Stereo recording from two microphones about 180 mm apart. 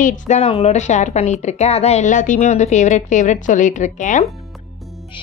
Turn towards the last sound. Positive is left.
turn(degrees=45)  # may be behind; listen again after turning